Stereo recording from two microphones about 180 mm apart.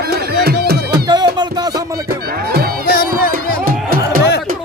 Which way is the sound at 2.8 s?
55° left (ahead or behind).